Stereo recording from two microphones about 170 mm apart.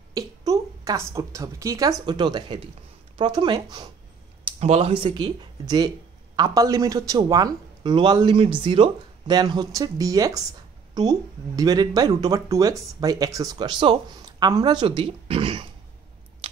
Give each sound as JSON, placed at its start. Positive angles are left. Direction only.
{"t": 0.1, "sound": "a woman's voice", "side_deg": -20}
{"t": 4.5, "sound": "speech", "side_deg": -40}